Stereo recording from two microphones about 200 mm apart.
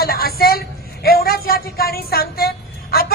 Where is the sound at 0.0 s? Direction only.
50° left (ahead or behind).